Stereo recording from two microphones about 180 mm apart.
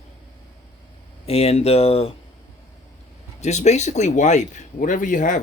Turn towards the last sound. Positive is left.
turn(degrees=45)  # may be behind; listen again after turning